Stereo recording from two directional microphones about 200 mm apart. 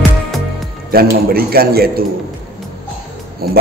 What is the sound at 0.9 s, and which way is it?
Speech, 50° right (ahead or behind).